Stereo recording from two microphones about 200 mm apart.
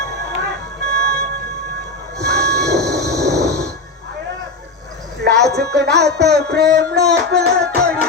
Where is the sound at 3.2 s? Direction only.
55° right (ahead or behind).